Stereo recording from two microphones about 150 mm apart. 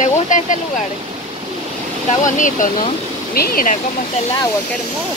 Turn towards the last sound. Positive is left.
turn(degrees=70)  # may be behind; listen again after turning